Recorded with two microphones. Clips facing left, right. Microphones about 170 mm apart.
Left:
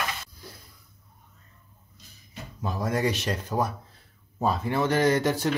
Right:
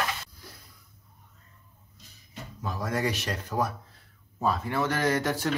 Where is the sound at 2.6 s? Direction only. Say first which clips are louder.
Left 3 dB; 25° left (ahead or behind).